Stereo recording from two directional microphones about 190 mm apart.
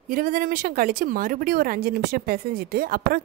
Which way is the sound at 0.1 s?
45° right (ahead or behind).